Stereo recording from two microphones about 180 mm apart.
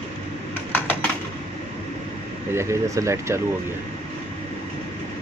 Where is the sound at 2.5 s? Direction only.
15° right (ahead or behind).